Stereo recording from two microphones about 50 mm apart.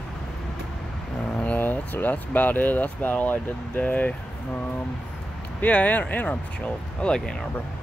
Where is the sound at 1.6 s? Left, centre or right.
Left.